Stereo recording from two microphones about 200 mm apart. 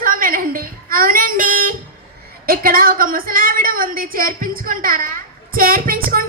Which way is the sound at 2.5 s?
45° right (ahead or behind).